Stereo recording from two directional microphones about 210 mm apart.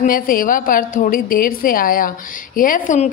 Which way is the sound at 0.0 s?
40° left (ahead or behind).